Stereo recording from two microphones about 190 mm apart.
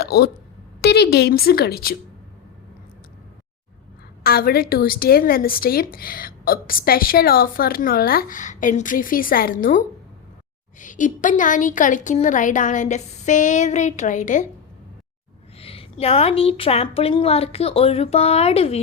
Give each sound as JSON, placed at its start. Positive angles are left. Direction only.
{"t": 0.0, "sound": "a woman's voice", "side_deg": 55}
{"t": 4.2, "sound": "a woman's voice", "side_deg": 55}
{"t": 15.5, "sound": "a woman's voice", "side_deg": 30}